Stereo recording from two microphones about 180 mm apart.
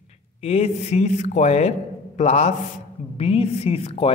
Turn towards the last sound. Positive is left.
turn(degrees=35)  # may be behind; listen again after turning